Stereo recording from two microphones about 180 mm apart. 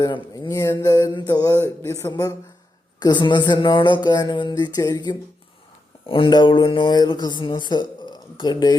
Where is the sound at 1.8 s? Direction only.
15° left (ahead or behind).